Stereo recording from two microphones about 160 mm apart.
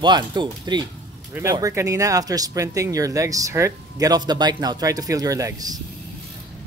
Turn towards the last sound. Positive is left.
turn(degrees=-25)  # may be behind; listen again after turning